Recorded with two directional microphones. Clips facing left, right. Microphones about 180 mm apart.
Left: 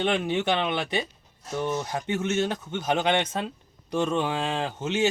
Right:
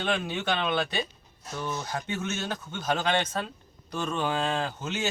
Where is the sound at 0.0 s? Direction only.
25° left (ahead or behind).